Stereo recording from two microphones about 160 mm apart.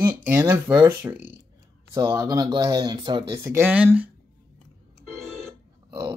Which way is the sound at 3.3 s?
15° right (ahead or behind).